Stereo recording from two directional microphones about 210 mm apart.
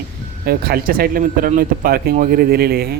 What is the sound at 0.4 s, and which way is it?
Speech, 45° right (ahead or behind).